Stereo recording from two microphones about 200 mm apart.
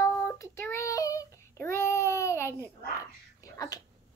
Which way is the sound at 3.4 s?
15° left (ahead or behind).